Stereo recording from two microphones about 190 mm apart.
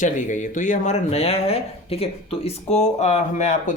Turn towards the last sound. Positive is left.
turn(degrees=35)  # may be behind; listen again after turning